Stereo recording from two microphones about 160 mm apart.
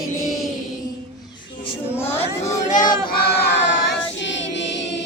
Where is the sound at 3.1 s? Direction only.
80° left.